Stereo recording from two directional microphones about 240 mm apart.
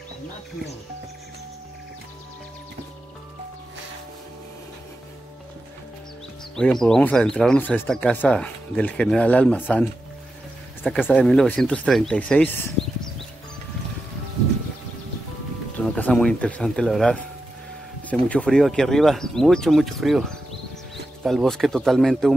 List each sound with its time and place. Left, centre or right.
6.5 s speech: centre
15.8 s speech: centre
18.3 s speech: centre